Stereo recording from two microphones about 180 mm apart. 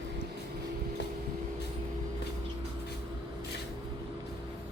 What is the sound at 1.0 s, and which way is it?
Vehicle, 70° left (ahead or behind).